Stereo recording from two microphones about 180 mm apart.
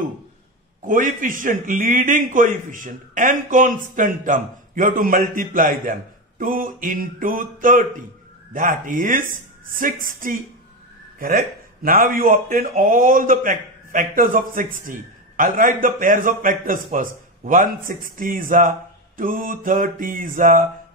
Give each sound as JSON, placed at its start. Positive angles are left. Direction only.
{"t": 0.8, "sound": "a man's voice", "side_deg": -50}
{"t": 11.1, "sound": "a man's voice", "side_deg": -50}